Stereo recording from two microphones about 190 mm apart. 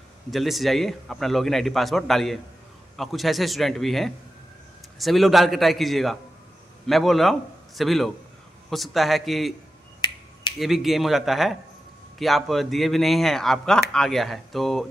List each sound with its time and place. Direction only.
0.3 s speech: centre (ahead or behind)
10.0 s finger snapping: 25° left (ahead or behind)
10.6 s speech: centre (ahead or behind)